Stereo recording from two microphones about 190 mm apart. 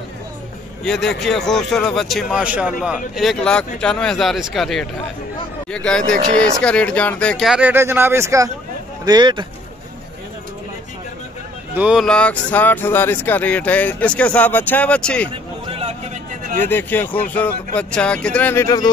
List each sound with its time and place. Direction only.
0.8 s speech: centre (ahead or behind)
5.9 s speech: 5° left (ahead or behind); by 9.5 s 25° right (ahead or behind)
11.7 s speech: 5° right (ahead or behind)
16.6 s speech: 10° left (ahead or behind)